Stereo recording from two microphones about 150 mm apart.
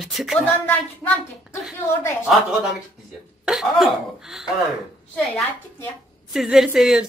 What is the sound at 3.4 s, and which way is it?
A woman's voice, 5° right (ahead or behind).